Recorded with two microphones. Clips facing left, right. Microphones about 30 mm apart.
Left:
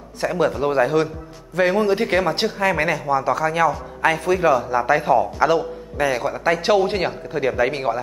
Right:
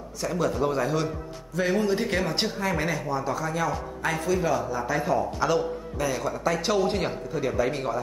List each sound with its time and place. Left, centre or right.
0.2 s a man's voice: left
1.5 s a man's voice: left
3.1 s a man's voice: left